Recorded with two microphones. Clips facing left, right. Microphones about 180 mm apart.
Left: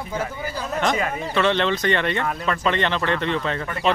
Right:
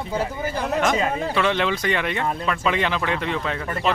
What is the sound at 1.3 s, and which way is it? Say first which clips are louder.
Speech: left 4 dB; 5° right (ahead or behind).